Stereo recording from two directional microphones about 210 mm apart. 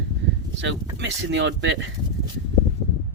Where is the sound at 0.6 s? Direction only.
60° right (ahead or behind).